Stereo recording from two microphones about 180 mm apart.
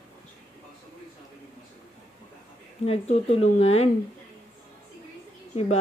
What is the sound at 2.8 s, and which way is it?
Speech, 35° left (ahead or behind).